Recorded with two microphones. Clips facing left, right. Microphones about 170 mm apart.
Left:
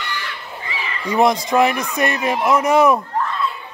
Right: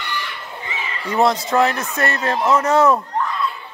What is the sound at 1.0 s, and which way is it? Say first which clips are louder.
A man's voice: left 1 dB; 15° left (ahead or behind).